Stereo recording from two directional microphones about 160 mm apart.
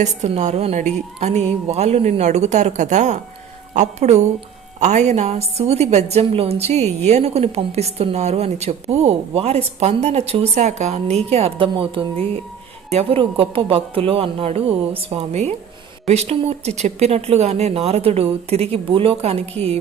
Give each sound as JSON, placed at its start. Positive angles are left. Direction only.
{"t": 0.0, "sound": "a woman's voice", "side_deg": -45}